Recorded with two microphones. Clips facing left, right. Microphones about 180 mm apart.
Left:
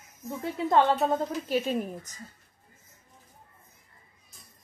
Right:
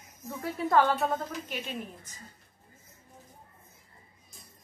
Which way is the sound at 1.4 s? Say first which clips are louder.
Left 10 dB; 40° left (ahead or behind).